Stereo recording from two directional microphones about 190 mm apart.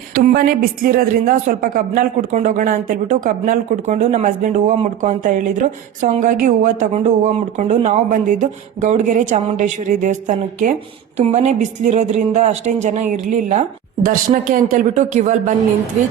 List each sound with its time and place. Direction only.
0.1 s speech: 50° right (ahead or behind)